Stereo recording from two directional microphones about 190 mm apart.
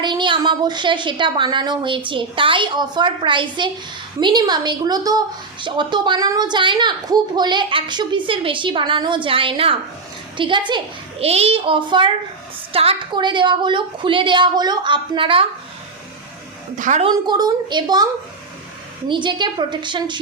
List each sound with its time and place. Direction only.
0.0 s a woman's voice: 25° right (ahead or behind)
16.7 s a woman's voice: 40° right (ahead or behind)
17.1 s a woman's voice: 20° right (ahead or behind)